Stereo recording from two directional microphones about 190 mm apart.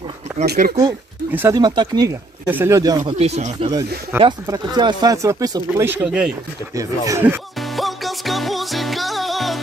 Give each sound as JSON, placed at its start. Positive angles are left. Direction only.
{"t": 0.5, "sound": "speech", "side_deg": -50}
{"t": 0.7, "sound": "speech", "side_deg": -15}
{"t": 3.1, "sound": "speech", "side_deg": -35}
{"t": 4.2, "sound": "speech", "side_deg": -25}
{"t": 6.0, "sound": "speech", "side_deg": -5}
{"t": 7.6, "sound": "music", "side_deg": 0}